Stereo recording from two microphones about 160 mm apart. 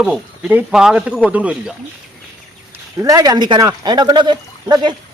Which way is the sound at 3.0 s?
20° right (ahead or behind).